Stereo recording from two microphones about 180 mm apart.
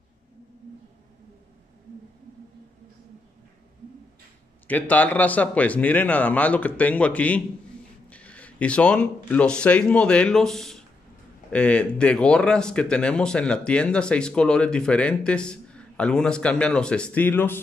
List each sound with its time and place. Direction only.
4.6 s a man's voice: 10° left (ahead or behind)